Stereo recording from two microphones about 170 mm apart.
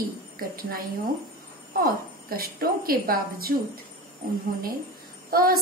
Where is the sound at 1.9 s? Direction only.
60° right (ahead or behind).